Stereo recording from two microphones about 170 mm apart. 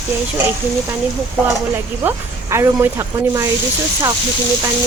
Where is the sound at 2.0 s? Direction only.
15° right (ahead or behind).